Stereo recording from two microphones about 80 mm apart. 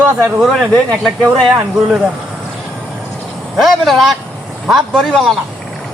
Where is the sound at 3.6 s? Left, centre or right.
Centre.